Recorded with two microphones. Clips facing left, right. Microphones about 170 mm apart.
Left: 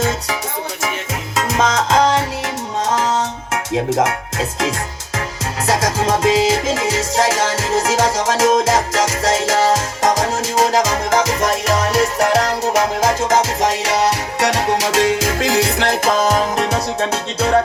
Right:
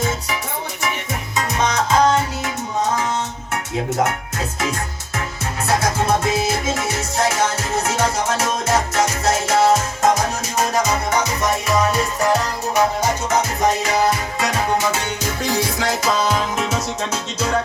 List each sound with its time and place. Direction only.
1.5 s music: 90° left; by 16.7 s 40° left (ahead or behind)
16.7 s music: 60° left (ahead or behind)